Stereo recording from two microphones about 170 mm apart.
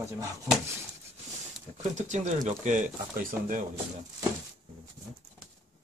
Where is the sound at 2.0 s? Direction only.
45° right (ahead or behind).